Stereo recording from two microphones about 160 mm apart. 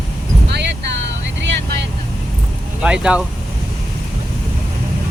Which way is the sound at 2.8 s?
5° right (ahead or behind).